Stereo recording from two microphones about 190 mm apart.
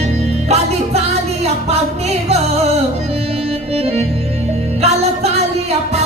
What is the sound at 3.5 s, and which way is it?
Organ, 35° right (ahead or behind).